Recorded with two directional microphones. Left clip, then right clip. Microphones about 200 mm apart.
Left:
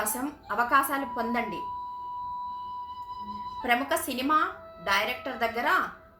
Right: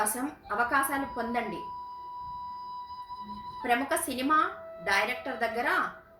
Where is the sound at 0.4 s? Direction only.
20° left (ahead or behind).